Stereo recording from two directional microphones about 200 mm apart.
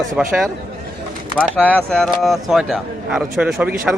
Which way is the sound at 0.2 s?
Centre (ahead or behind).